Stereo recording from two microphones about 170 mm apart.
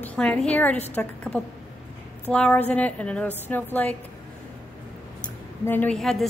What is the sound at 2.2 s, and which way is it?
A woman's voice, 5° left (ahead or behind).